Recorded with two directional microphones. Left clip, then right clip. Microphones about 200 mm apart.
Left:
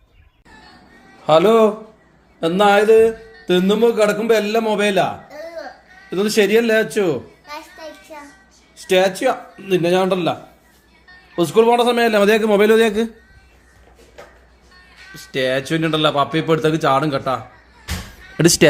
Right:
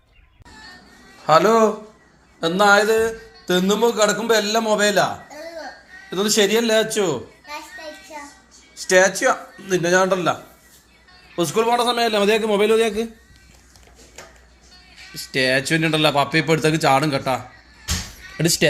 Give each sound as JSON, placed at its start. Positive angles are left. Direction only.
{"t": 1.3, "sound": "speech", "side_deg": 35}
{"t": 7.4, "sound": "children playing", "side_deg": 20}
{"t": 8.9, "sound": "speech", "side_deg": 30}
{"t": 11.3, "sound": "a man's voice", "side_deg": 30}
{"t": 15.1, "sound": "speech", "side_deg": 15}
{"t": 18.3, "sound": "speech", "side_deg": 40}